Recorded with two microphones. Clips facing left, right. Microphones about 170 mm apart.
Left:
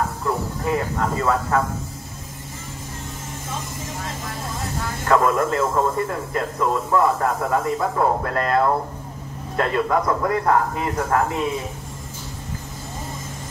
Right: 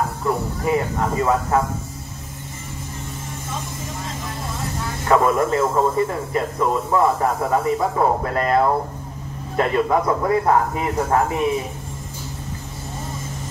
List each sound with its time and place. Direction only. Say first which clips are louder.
0.7 s speech: right 2 dB; 15° right (ahead or behind)
5.0 s speech: right 1 dB; 10° right (ahead or behind)